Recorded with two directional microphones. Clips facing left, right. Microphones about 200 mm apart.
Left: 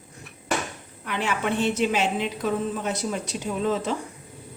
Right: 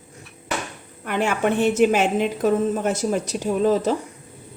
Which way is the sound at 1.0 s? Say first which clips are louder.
Right 6 dB; 50° right (ahead or behind).